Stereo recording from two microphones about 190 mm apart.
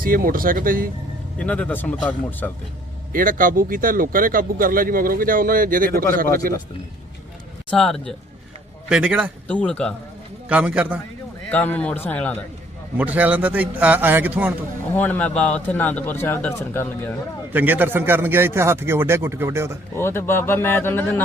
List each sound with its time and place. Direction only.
0.0 s speech: 50° right (ahead or behind)
1.4 s a man's voice: 5° left (ahead or behind)
3.1 s speech: 45° right (ahead or behind)
7.7 s a man's voice: centre (ahead or behind)
9.5 s a man's voice: 5° left (ahead or behind)
10.5 s a man's voice: 5° right (ahead or behind)
11.5 s a man's voice: 10° left (ahead or behind)
13.0 s a man's voice: 10° right (ahead or behind)
14.9 s a man's voice: 10° left (ahead or behind)
17.5 s a man's voice: 10° right (ahead or behind)
20.0 s a man's voice: 10° left (ahead or behind)